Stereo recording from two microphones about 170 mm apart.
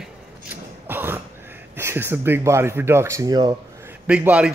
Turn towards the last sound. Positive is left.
turn(degrees=-5)  # may be behind; listen again after turning